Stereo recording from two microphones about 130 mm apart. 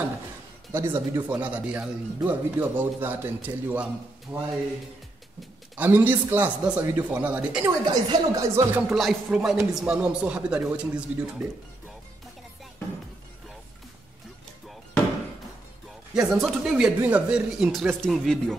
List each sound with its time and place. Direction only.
0.7 s speech: 20° right (ahead or behind)
5.8 s speech: 15° right (ahead or behind)
7.6 s speech: 30° right (ahead or behind)
8.9 s speech: centre (ahead or behind)
16.2 s speech: 5° right (ahead or behind)